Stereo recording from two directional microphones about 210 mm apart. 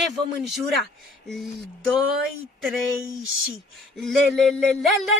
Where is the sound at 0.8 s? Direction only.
Centre (ahead or behind).